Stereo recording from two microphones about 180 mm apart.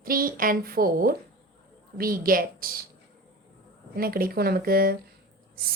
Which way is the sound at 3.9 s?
55° right (ahead or behind).